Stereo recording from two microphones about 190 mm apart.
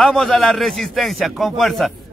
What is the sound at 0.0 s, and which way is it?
A man's voice, 5° left (ahead or behind).